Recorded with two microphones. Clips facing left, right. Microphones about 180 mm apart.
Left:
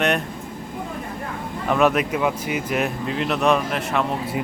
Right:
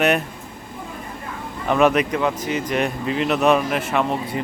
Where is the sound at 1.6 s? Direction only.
Centre (ahead or behind).